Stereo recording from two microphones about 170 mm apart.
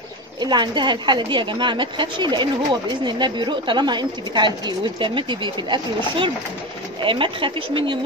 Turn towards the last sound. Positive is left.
turn(degrees=-30)  # may be behind; listen again after turning